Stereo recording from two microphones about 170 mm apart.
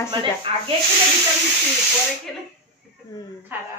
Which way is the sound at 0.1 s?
30° right (ahead or behind).